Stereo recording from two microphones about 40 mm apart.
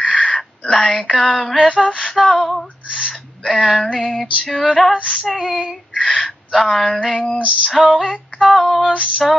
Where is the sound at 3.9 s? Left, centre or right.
Centre.